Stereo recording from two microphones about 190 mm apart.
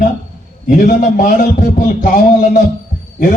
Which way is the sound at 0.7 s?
45° left (ahead or behind).